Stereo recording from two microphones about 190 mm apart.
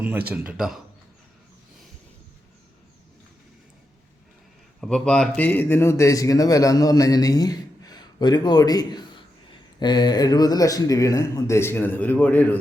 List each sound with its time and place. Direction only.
0.0 s speech: 10° right (ahead or behind)
4.8 s speech: 5° left (ahead or behind)